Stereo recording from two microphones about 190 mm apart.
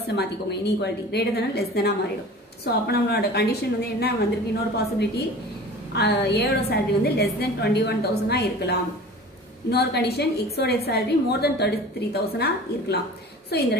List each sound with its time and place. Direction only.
0.1 s a woman's voice: 60° left (ahead or behind)